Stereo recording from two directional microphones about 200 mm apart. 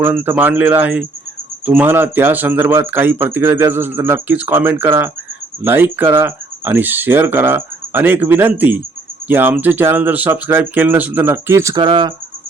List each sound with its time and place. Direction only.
0.0 s speech: 10° right (ahead or behind)